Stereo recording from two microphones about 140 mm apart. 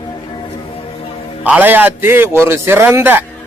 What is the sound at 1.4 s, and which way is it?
A man's voice, 10° right (ahead or behind).